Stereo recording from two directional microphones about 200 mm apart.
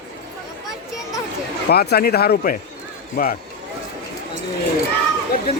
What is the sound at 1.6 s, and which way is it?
Speech, 55° left (ahead or behind).